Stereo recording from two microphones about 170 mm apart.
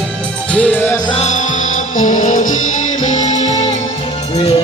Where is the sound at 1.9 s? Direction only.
50° left (ahead or behind).